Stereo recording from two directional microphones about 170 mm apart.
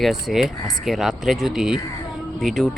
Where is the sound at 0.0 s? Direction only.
Centre (ahead or behind).